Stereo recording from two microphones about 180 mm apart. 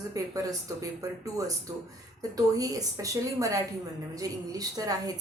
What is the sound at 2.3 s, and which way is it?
A woman's voice, 20° right (ahead or behind).